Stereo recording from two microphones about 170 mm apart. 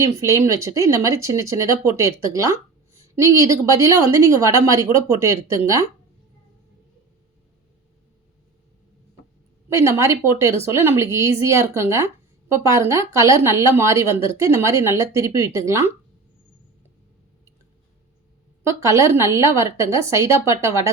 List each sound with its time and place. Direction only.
0.0 s speech: 15° right (ahead or behind)
9.7 s speech: 15° right (ahead or behind)
18.6 s speech: 15° right (ahead or behind)